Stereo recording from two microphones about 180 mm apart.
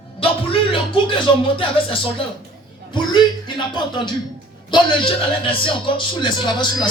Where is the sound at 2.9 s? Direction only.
25° left (ahead or behind).